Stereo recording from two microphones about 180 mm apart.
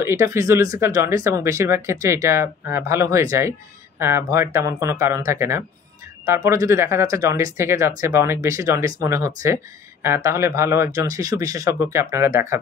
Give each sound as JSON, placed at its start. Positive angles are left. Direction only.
{"t": 0.0, "sound": "speech", "side_deg": -15}